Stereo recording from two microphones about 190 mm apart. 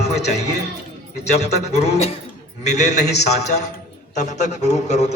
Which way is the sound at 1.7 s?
35° left (ahead or behind).